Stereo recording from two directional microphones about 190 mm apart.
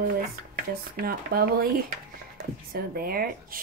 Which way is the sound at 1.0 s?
50° right (ahead or behind).